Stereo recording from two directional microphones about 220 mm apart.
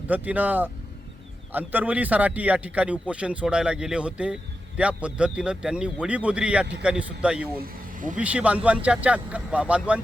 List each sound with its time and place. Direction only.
0.1 s speech: 5° right (ahead or behind)
7.6 s speech: 35° right (ahead or behind)
8.2 s speech: 5° right (ahead or behind)